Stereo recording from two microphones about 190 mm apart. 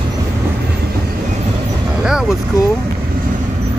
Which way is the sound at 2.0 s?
5° right (ahead or behind).